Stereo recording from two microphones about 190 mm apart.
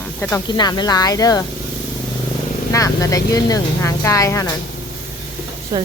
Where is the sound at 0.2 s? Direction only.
15° left (ahead or behind).